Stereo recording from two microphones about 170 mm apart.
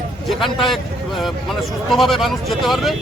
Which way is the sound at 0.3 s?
Centre (ahead or behind).